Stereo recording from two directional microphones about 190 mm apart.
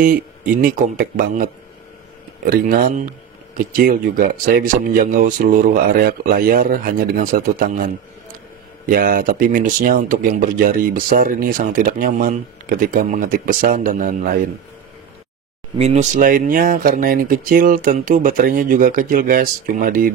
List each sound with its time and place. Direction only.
0.0 s speech: 50° right (ahead or behind)
15.8 s speech: 35° right (ahead or behind)